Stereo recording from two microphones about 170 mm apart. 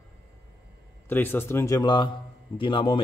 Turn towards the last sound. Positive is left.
turn(degrees=30)  # may be behind; listen again after turning